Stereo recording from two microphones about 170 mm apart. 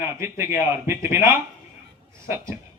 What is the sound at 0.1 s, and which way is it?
A man's voice, 15° right (ahead or behind).